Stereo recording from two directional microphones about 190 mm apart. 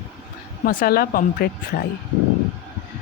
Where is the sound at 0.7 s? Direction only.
50° left (ahead or behind).